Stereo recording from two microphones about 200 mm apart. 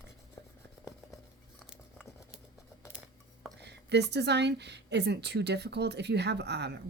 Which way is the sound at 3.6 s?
55° right (ahead or behind).